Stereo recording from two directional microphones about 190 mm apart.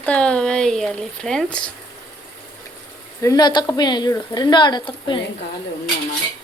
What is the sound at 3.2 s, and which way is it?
A woman's voice, 20° left (ahead or behind).